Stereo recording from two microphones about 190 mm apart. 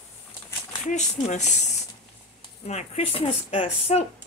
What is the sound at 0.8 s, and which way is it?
Speech, 40° left (ahead or behind).